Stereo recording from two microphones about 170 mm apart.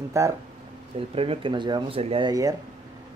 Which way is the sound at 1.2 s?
30° right (ahead or behind).